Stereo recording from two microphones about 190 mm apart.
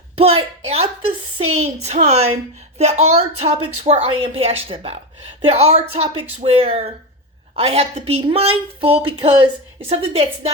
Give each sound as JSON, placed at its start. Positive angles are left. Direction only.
{"t": 0.2, "sound": "a woman's voice", "side_deg": -30}